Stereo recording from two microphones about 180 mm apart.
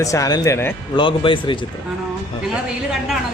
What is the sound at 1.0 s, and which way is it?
Speech, 25° left (ahead or behind).